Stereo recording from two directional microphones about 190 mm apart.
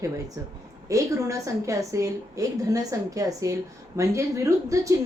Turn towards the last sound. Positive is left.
turn(degrees=-15)  # may be behind; listen again after turning